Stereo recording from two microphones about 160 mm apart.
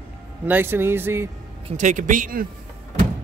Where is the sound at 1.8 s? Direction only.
50° right (ahead or behind).